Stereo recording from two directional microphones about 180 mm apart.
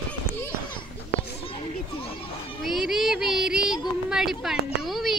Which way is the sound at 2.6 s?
Centre (ahead or behind).